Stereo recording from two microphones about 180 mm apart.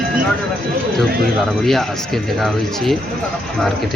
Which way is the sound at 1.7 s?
Centre (ahead or behind).